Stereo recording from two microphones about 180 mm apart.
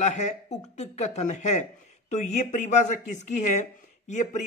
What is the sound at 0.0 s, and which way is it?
A man's voice, 40° left (ahead or behind).